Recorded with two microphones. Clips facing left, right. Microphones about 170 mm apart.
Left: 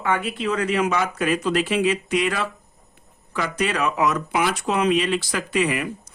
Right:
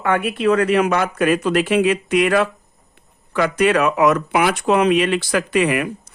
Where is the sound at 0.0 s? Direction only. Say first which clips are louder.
Right 6 dB; 60° right (ahead or behind).